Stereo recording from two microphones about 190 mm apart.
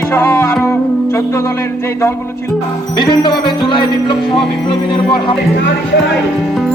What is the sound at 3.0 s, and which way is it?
Music, 25° left (ahead or behind).